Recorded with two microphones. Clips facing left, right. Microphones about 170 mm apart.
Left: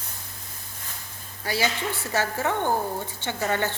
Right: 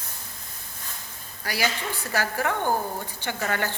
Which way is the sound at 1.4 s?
25° left (ahead or behind).